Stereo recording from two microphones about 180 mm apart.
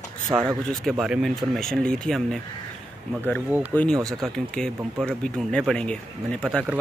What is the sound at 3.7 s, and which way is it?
Speech, 10° left (ahead or behind).